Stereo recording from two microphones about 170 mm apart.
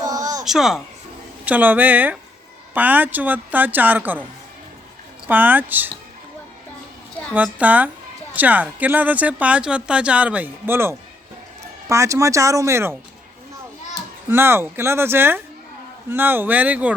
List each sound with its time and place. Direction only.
0.0 s baby cry: 20° right (ahead or behind)
0.4 s speech: centre (ahead or behind)
5.3 s speech: 10° right (ahead or behind)
7.3 s speech: 10° right (ahead or behind)
14.3 s speech: 15° right (ahead or behind)